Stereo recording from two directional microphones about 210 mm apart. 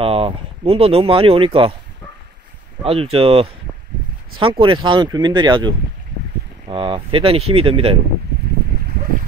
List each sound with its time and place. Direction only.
0.0 s speech: 25° right (ahead or behind)
2.8 s speech: 25° right (ahead or behind)